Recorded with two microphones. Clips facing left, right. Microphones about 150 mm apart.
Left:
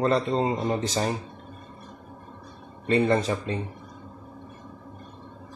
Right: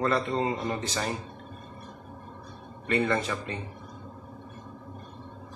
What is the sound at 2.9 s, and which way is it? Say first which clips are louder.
Speech: left 5 dB; 30° left (ahead or behind).